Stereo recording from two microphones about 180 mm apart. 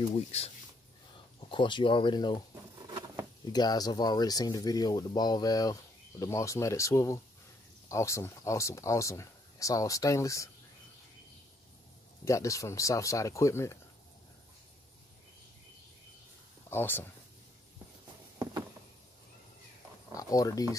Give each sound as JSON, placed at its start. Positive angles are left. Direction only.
{"t": 0.1, "sound": "speech", "side_deg": 35}
{"t": 1.5, "sound": "speech", "side_deg": 25}
{"t": 3.5, "sound": "speech", "side_deg": 20}
{"t": 12.3, "sound": "speech", "side_deg": 15}
{"t": 16.7, "sound": "speech", "side_deg": 10}
{"t": 20.2, "sound": "speech", "side_deg": 20}